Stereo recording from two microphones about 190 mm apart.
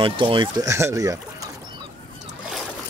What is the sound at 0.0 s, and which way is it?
Speech, 25° right (ahead or behind).